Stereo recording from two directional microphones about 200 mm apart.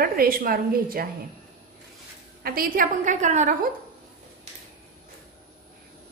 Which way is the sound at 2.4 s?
45° right (ahead or behind).